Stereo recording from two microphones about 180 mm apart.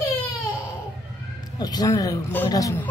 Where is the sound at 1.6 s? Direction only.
20° left (ahead or behind).